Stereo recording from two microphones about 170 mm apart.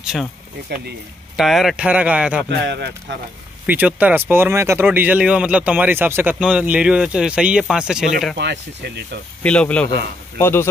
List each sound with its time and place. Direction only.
0.0 s speech: 5° right (ahead or behind)
1.3 s speech: centre (ahead or behind)
2.6 s speech: 85° right
3.6 s speech: 10° right (ahead or behind)
8.4 s speech: 85° right
9.4 s speech: 5° left (ahead or behind)